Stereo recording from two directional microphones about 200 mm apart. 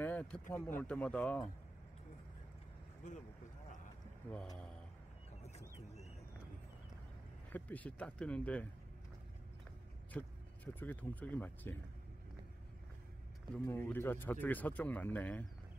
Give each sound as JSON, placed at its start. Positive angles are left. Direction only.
{"t": 0.0, "sound": "speech", "side_deg": 5}
{"t": 7.5, "sound": "speech", "side_deg": 10}
{"t": 10.1, "sound": "speech", "side_deg": 10}
{"t": 13.7, "sound": "speech", "side_deg": 10}